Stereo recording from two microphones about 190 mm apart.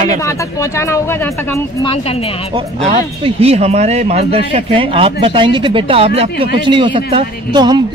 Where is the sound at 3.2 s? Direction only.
30° right (ahead or behind).